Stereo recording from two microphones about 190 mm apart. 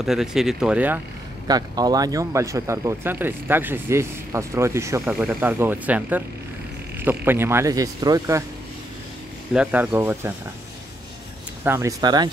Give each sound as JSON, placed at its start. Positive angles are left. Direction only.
{"t": 0.0, "sound": "speech", "side_deg": 0}
{"t": 1.5, "sound": "speech", "side_deg": -20}
{"t": 9.5, "sound": "speech", "side_deg": -5}
{"t": 11.6, "sound": "speech", "side_deg": -15}